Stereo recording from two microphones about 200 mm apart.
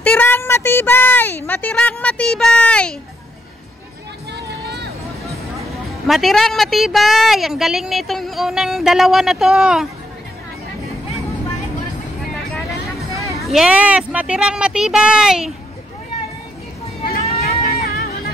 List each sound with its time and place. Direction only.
0.0 s speech: 10° left (ahead or behind)
4.3 s music: 55° right (ahead or behind)
5.7 s a woman's voice: centre (ahead or behind)
13.5 s a woman's voice: 5° right (ahead or behind)
17.0 s vehicle: 45° left (ahead or behind)
17.6 s music: 50° left (ahead or behind)